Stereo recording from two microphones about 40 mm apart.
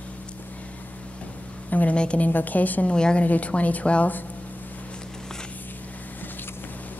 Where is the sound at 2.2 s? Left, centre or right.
Left.